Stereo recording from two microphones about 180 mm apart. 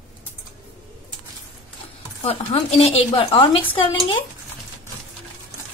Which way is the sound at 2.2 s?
35° left (ahead or behind).